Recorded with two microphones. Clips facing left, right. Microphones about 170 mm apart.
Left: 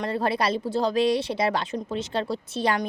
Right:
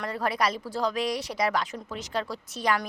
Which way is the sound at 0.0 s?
30° left (ahead or behind).